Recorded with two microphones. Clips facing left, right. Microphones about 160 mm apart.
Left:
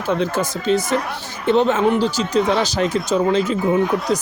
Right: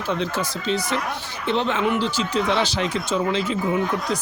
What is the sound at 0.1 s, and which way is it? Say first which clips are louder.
Speech: left 5 dB; 50° left (ahead or behind).